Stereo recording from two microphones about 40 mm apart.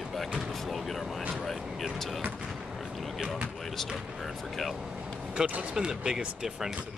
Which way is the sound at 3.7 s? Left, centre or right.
Centre.